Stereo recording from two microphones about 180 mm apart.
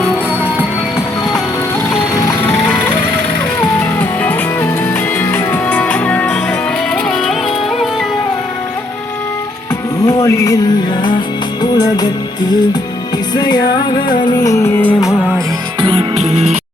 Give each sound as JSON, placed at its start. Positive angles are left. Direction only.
{"t": 3.9, "sound": "music", "side_deg": 10}
{"t": 10.1, "sound": "music", "side_deg": 15}
{"t": 13.3, "sound": "music", "side_deg": 25}
{"t": 15.8, "sound": "music", "side_deg": -30}